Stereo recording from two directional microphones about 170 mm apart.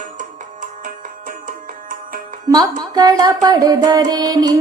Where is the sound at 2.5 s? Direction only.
25° right (ahead or behind).